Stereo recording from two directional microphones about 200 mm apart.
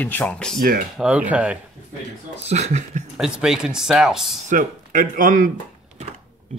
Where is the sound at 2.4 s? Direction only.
35° right (ahead or behind).